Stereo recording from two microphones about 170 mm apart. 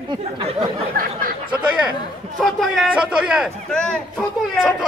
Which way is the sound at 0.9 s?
60° right (ahead or behind).